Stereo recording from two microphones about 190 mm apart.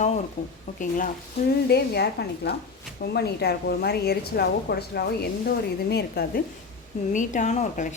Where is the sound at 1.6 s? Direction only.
60° left (ahead or behind).